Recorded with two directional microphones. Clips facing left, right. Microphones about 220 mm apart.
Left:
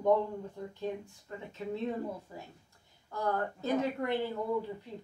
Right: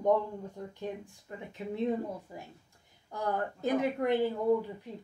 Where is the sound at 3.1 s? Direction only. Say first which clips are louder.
Even; 15° right (ahead or behind).